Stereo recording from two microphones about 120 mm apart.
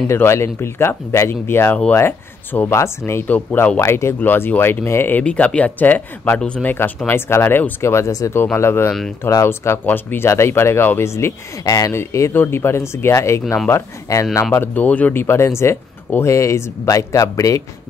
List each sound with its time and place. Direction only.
0.1 s speech: 20° left (ahead or behind)